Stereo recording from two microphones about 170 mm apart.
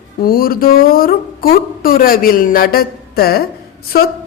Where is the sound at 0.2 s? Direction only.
60° left (ahead or behind).